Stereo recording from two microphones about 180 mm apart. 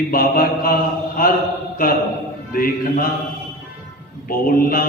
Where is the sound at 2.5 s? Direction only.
55° left (ahead or behind).